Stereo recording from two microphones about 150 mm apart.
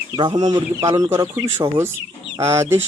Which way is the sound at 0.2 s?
30° right (ahead or behind).